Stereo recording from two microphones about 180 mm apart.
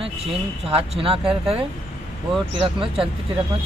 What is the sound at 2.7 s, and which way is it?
Speech, 30° right (ahead or behind).